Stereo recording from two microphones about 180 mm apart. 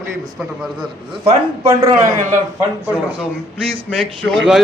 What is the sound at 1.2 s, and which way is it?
Speech, 30° right (ahead or behind).